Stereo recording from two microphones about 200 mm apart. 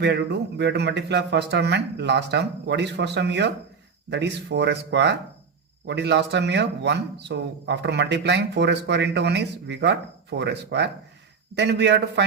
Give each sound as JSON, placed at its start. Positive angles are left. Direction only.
{"t": 0.0, "sound": "a man's voice", "side_deg": -60}